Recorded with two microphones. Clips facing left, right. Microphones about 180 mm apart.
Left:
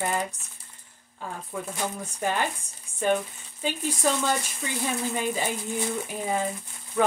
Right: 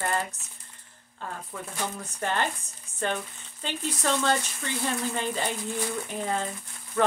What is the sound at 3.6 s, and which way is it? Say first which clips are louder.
Speech: left 3 dB; 10° left (ahead or behind).